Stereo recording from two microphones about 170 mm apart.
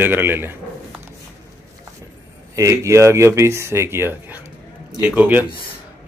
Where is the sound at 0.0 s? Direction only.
15° right (ahead or behind).